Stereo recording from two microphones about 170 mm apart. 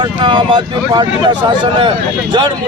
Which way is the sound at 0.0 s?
25° right (ahead or behind).